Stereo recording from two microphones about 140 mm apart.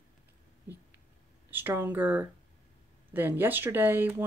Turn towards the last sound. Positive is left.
turn(degrees=-15)  # may be behind; listen again after turning